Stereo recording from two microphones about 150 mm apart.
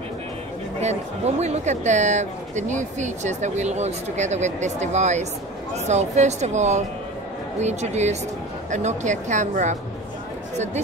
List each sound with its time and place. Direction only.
0.7 s speech: 45° right (ahead or behind)